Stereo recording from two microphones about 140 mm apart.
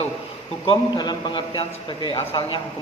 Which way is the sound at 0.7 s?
30° left (ahead or behind).